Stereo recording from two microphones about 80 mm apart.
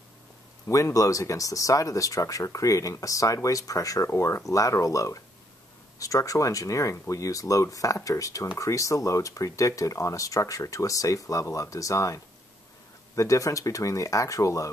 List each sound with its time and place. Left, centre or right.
0.7 s speech: left